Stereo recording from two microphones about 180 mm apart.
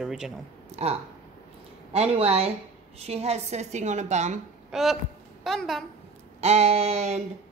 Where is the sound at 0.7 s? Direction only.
35° right (ahead or behind).